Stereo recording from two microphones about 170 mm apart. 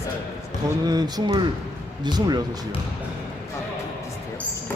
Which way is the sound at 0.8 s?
25° right (ahead or behind).